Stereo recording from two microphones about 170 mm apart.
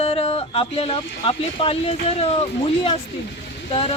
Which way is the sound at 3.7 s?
30° left (ahead or behind).